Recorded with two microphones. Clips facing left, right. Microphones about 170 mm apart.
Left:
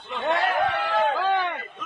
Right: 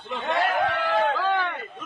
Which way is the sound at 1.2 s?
15° left (ahead or behind).